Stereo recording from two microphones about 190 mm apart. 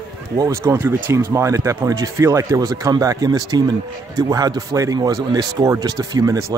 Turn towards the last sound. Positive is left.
turn(degrees=-15)  # may be behind; listen again after turning